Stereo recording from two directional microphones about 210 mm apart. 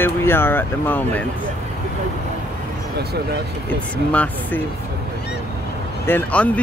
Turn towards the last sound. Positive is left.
turn(degrees=10)  # may be behind; listen again after turning